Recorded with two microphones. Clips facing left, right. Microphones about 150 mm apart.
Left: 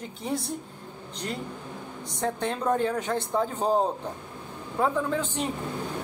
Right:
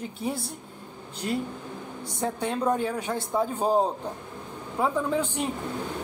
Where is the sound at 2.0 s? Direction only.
10° right (ahead or behind).